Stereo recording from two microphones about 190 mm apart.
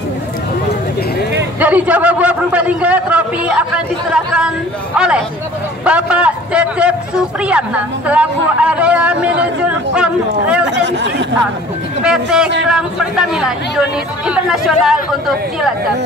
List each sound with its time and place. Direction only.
1.6 s a man's voice: 5° right (ahead or behind)
10.7 s speech: 70° right (ahead or behind)
12.0 s speech: 5° right (ahead or behind)